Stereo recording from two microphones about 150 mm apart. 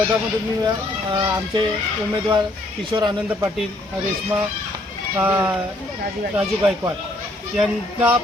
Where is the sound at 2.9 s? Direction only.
30° right (ahead or behind).